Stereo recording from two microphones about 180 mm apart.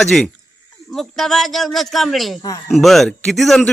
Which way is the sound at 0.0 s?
Centre (ahead or behind).